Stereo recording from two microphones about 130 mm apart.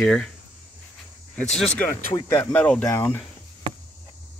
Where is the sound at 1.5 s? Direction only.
5° left (ahead or behind).